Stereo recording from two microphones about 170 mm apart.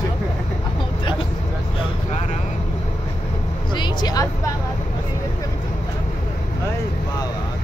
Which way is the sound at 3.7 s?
25° left (ahead or behind).